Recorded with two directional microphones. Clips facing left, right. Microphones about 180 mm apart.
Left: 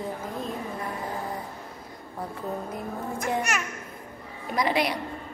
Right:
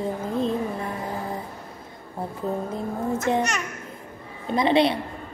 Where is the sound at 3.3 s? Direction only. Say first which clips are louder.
Right 2 dB; 20° right (ahead or behind).